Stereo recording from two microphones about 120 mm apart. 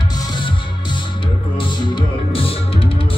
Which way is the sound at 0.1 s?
35° left (ahead or behind).